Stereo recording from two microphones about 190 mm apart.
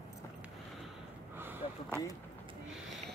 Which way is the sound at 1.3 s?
10° right (ahead or behind).